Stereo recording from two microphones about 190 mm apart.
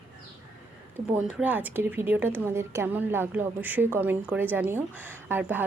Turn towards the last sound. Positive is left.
turn(degrees=-10)  # may be behind; listen again after turning